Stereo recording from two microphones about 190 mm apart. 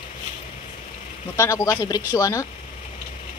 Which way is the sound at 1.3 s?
15° left (ahead or behind).